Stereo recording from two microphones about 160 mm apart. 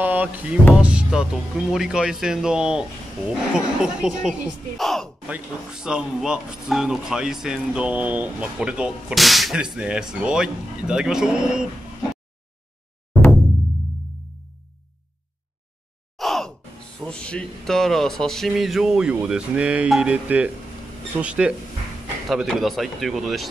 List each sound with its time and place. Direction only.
0.0 s music: 10° right (ahead or behind)
0.7 s speech: 5° right (ahead or behind)
16.2 s sigh: centre (ahead or behind)
17.0 s speech: 5° left (ahead or behind)